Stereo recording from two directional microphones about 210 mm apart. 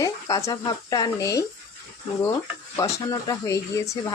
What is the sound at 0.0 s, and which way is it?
Speech, 15° left (ahead or behind).